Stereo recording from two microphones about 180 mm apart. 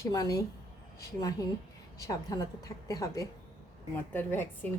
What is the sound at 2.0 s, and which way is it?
A woman's voice, 20° left (ahead or behind).